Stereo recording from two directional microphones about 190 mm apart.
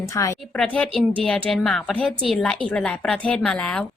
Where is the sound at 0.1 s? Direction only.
15° left (ahead or behind).